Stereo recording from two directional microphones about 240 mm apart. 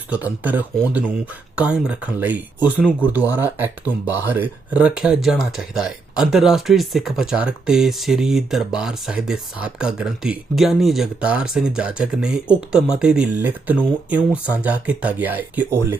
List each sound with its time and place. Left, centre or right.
0.1 s speech: centre